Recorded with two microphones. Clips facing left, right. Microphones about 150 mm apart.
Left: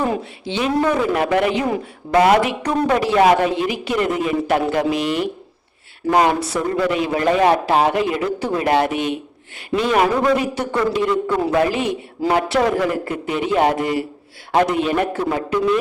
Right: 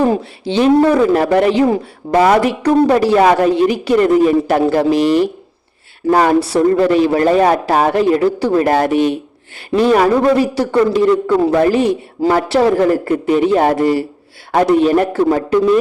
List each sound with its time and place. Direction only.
0.0 s speech: 35° right (ahead or behind)